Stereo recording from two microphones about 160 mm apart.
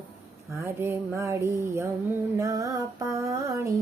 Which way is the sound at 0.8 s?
15° right (ahead or behind).